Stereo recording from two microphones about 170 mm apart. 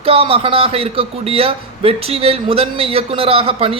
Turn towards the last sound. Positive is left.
turn(degrees=-35)  # may be behind; listen again after turning